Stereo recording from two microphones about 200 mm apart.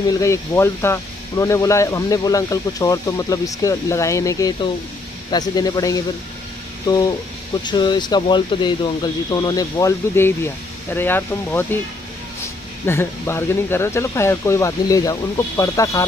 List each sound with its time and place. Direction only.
0.1 s speech: 15° left (ahead or behind)
12.8 s speech: 10° left (ahead or behind)